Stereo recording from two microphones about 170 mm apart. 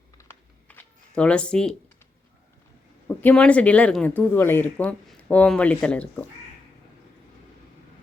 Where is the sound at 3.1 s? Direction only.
5° left (ahead or behind).